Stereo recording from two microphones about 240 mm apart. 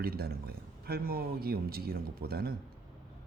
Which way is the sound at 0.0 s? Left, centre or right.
Right.